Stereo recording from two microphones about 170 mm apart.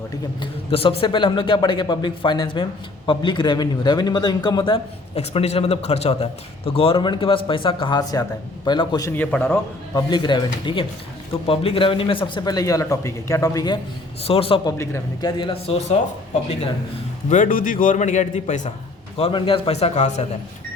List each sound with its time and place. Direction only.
0.7 s a man's voice: 35° left (ahead or behind); by 10.0 s 15° left (ahead or behind)
10.1 s a man's voice: 25° left (ahead or behind)
14.3 s a man's voice: 35° left (ahead or behind)
15.4 s a man's voice: 30° left (ahead or behind)
17.2 s a man's voice: 50° left (ahead or behind)
19.1 s a man's voice: 35° left (ahead or behind)